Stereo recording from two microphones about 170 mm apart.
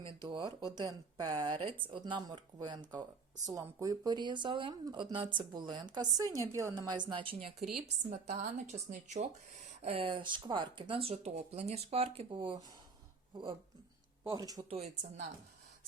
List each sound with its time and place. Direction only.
0.2 s speech: 25° right (ahead or behind)
7.3 s speech: centre (ahead or behind)
8.1 s speech: 45° right (ahead or behind); by 12.6 s 30° right (ahead or behind)
14.3 s speech: 20° right (ahead or behind)
14.7 s speech: 40° right (ahead or behind)